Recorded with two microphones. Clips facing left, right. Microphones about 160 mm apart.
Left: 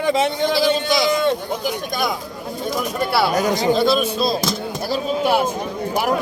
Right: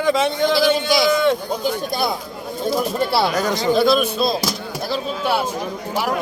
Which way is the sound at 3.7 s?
5° right (ahead or behind).